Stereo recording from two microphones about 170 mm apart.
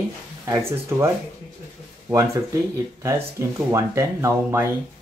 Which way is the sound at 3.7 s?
15° right (ahead or behind).